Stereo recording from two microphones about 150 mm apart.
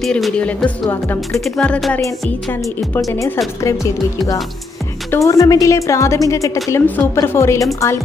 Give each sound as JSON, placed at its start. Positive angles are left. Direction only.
{"t": 0.0, "sound": "speech", "side_deg": 5}
{"t": 1.3, "sound": "speech", "side_deg": 5}
{"t": 3.1, "sound": "a woman's voice", "side_deg": 20}